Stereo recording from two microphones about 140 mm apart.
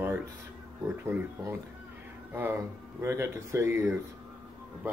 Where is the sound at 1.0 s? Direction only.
20° right (ahead or behind).